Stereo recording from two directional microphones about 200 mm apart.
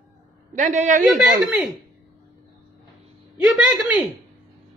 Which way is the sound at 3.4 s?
5° right (ahead or behind).